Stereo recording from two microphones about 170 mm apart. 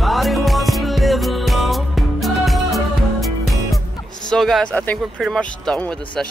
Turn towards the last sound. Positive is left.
turn(degrees=5)  # may be behind; listen again after turning